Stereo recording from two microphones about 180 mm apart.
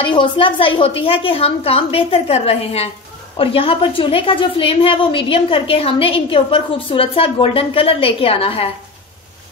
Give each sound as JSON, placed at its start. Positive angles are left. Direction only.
{"t": 0.0, "sound": "a woman's voice", "side_deg": 30}